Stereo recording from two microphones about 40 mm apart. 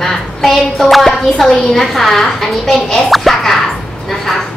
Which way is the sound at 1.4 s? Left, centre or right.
Centre.